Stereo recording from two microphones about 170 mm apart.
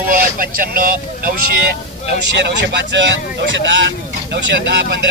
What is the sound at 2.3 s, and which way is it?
Speech, 90° right.